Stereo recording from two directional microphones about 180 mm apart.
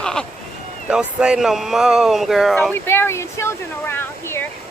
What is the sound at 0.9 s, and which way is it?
Speech, 5° right (ahead or behind).